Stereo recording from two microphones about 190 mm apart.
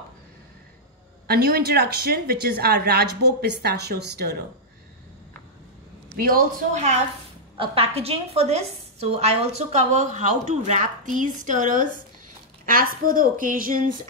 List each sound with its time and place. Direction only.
1.2 s a woman's voice: 55° right (ahead or behind)
6.1 s a woman's voice: 50° right (ahead or behind)
7.5 s a woman's voice: 30° right (ahead or behind); by 13.7 s 45° right (ahead or behind)